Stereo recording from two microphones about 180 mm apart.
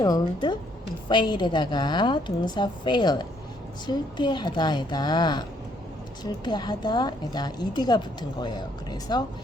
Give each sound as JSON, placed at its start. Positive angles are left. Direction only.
{"t": 0.0, "sound": "a woman's voice", "side_deg": 20}